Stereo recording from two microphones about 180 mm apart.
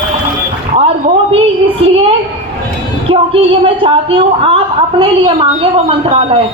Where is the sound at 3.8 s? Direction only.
30° right (ahead or behind).